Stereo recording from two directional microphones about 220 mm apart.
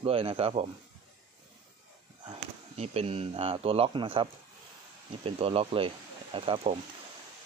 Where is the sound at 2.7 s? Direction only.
25° right (ahead or behind).